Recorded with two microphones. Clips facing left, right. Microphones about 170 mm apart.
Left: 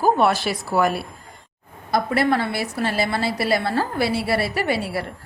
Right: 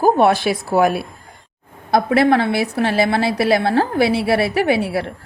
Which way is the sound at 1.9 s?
60° right (ahead or behind).